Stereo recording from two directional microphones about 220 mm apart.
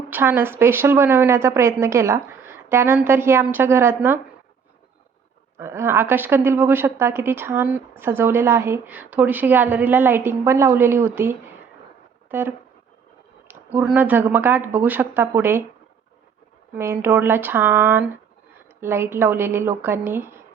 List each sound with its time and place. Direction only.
0.1 s a woman's voice: 10° right (ahead or behind)
5.5 s a woman's voice: 10° right (ahead or behind)
16.7 s a woman's voice: 10° right (ahead or behind)